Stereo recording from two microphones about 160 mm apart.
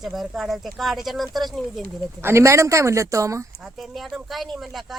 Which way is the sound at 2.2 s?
15° right (ahead or behind).